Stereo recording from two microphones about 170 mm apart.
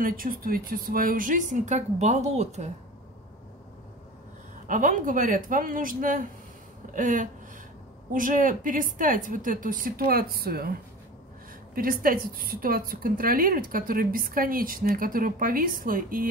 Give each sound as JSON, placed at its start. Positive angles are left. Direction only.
{"t": 0.0, "sound": "speech", "side_deg": -55}
{"t": 4.6, "sound": "speech", "side_deg": -50}
{"t": 6.9, "sound": "a sound", "side_deg": -50}
{"t": 8.1, "sound": "speech", "side_deg": -55}
{"t": 11.7, "sound": "a woman's voice", "side_deg": -55}